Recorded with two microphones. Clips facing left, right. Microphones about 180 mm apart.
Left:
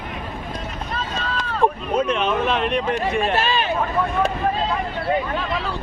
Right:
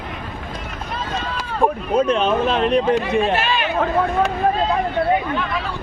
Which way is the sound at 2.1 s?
35° right (ahead or behind).